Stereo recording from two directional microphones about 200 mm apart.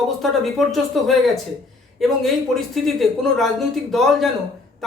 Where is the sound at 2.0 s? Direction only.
Centre (ahead or behind).